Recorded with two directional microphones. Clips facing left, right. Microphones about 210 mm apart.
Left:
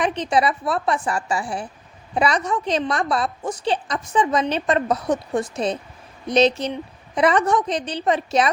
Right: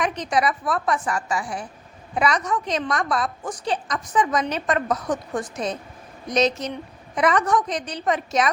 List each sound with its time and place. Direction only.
0.0 s a woman's voice: 30° left (ahead or behind)